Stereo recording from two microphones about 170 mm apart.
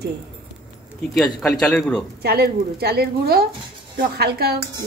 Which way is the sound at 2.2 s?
70° right (ahead or behind).